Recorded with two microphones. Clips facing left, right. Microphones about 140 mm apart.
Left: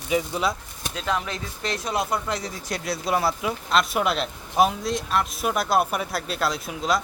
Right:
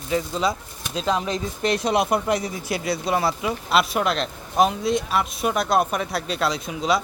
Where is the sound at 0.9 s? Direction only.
30° right (ahead or behind); by 7.0 s centre (ahead or behind).